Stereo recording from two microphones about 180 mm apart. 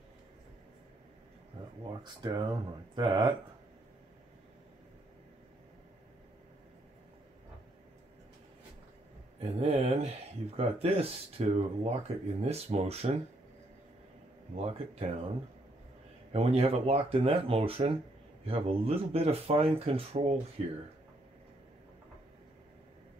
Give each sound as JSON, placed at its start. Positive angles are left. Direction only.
{"t": 2.2, "sound": "speech", "side_deg": -25}
{"t": 9.4, "sound": "speech", "side_deg": -35}
{"t": 14.6, "sound": "speech", "side_deg": -30}
{"t": 16.3, "sound": "speech", "side_deg": -35}